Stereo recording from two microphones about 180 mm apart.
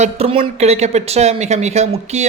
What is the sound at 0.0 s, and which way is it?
Speech, 35° right (ahead or behind).